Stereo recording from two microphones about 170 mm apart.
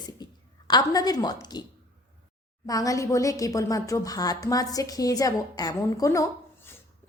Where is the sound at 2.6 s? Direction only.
20° left (ahead or behind).